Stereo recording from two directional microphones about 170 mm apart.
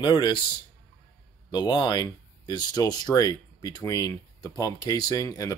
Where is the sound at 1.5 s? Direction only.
25° left (ahead or behind).